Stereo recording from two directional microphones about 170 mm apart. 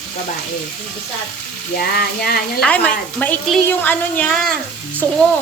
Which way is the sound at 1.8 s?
65° left (ahead or behind).